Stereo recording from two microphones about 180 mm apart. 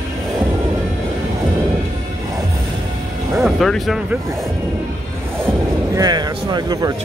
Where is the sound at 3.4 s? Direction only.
Centre (ahead or behind).